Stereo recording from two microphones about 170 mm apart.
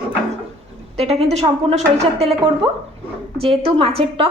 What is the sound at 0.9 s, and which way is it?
Speech, 35° right (ahead or behind).